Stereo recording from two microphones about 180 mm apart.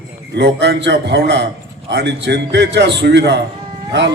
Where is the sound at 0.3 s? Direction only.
70° right (ahead or behind).